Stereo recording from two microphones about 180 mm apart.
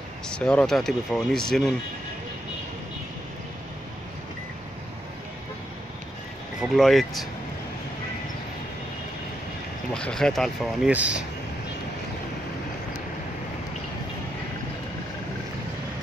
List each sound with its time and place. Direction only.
0.3 s speech: 5° left (ahead or behind)
6.6 s speech: centre (ahead or behind)
9.9 s speech: 5° left (ahead or behind)